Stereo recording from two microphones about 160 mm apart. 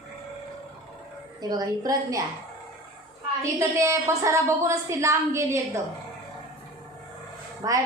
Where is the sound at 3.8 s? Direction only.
15° right (ahead or behind).